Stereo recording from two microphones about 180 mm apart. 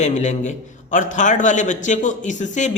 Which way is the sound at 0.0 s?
40° left (ahead or behind).